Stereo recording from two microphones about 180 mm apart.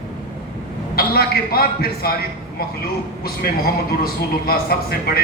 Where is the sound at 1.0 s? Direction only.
55° left (ahead or behind).